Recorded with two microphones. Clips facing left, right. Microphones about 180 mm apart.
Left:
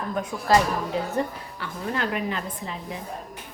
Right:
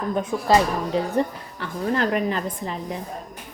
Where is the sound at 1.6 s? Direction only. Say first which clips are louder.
Right 5 dB; 40° right (ahead or behind).